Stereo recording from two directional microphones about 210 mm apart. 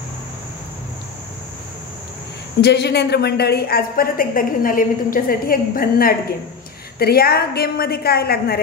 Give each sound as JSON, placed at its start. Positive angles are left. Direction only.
{"t": 2.6, "sound": "a woman's voice", "side_deg": 55}